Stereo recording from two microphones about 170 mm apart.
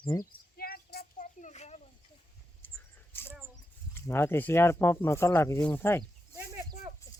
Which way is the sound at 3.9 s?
15° left (ahead or behind).